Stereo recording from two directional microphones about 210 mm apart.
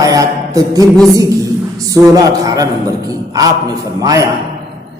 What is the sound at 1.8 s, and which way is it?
A man's voice, 15° right (ahead or behind).